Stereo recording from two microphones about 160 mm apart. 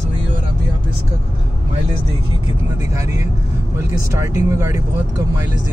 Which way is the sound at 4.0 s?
20° right (ahead or behind).